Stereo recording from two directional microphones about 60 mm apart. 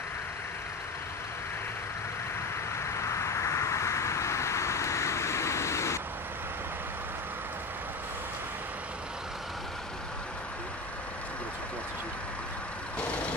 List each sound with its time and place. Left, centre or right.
2.9 s vehicle: left